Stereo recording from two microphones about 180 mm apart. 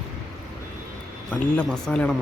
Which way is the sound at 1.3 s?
5° left (ahead or behind).